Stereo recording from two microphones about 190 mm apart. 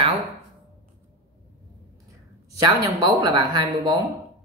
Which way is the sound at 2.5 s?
20° right (ahead or behind).